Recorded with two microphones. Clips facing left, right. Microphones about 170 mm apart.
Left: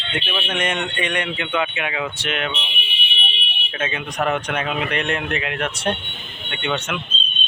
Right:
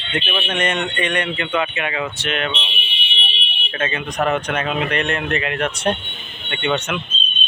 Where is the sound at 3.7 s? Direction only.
10° left (ahead or behind).